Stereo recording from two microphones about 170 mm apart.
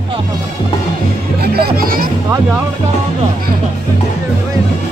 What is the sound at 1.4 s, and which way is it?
Music, 65° right (ahead or behind).